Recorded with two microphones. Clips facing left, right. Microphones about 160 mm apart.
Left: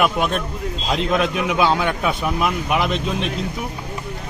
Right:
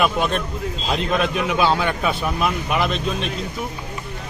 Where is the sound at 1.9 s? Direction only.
5° left (ahead or behind).